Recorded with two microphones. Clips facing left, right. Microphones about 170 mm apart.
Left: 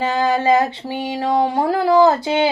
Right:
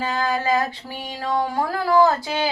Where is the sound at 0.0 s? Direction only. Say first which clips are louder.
Left 6 dB; 25° left (ahead or behind).